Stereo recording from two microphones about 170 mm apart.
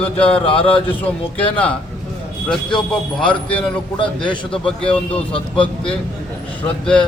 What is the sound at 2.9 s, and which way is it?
Speech, 5° left (ahead or behind).